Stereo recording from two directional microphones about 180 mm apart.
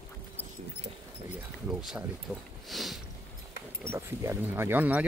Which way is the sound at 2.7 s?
Centre (ahead or behind).